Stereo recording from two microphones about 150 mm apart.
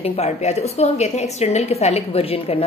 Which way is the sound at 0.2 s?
45° left (ahead or behind).